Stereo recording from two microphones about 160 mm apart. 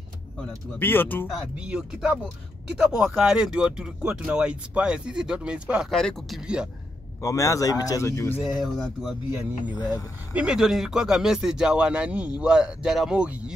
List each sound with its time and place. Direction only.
0.7 s speech: 15° left (ahead or behind)
1.6 s speech: 5° right (ahead or behind)
7.2 s a man's voice: 20° left (ahead or behind)
8.4 s speech: centre (ahead or behind)
9.8 s a man's voice: 25° left (ahead or behind)
10.3 s speech: 5° right (ahead or behind)